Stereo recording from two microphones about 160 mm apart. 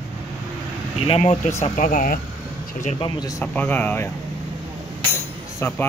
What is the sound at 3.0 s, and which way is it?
Speech, 25° left (ahead or behind).